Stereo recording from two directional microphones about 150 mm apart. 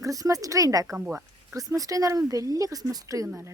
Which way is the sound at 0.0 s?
20° right (ahead or behind).